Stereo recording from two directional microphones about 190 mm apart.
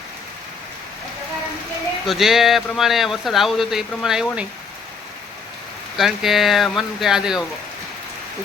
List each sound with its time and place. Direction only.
2.0 s speech: centre (ahead or behind)
6.0 s speech: centre (ahead or behind)